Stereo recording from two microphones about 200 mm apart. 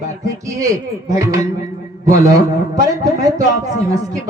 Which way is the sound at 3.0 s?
15° right (ahead or behind).